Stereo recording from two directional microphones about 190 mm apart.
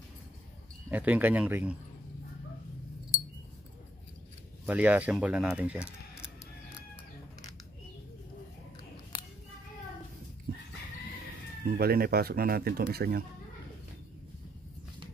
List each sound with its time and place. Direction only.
0.8 s speech: 10° right (ahead or behind)
4.6 s speech: 10° right (ahead or behind)
11.6 s speech: 55° right (ahead or behind)